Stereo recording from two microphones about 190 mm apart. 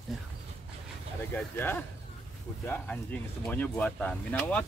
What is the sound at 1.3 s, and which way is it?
Speech, 10° left (ahead or behind).